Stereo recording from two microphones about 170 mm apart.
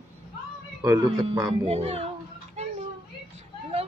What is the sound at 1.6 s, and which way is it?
Speech, 40° right (ahead or behind).